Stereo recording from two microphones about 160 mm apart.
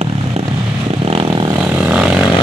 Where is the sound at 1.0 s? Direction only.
35° right (ahead or behind).